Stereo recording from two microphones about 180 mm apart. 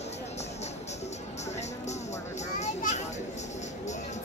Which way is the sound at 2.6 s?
40° left (ahead or behind).